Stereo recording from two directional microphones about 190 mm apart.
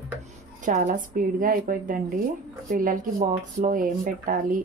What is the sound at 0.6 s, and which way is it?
Speech, 45° right (ahead or behind).